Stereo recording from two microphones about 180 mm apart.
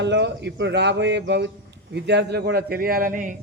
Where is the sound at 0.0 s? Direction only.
75° right (ahead or behind).